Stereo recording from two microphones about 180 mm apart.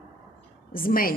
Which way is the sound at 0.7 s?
55° left (ahead or behind).